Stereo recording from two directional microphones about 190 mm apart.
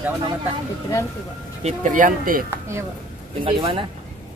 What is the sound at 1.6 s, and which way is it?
Speech, 45° right (ahead or behind).